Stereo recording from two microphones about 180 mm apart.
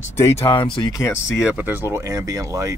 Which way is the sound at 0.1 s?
15° left (ahead or behind).